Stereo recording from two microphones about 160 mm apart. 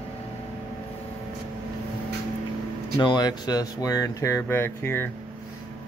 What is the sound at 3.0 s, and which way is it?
Speech, 25° left (ahead or behind).